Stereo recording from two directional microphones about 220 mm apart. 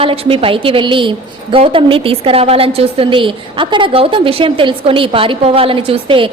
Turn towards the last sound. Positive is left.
turn(degrees=-25)  # may be behind; listen again after turning